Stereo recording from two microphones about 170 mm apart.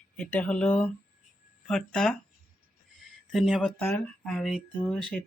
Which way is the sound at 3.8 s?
10° left (ahead or behind).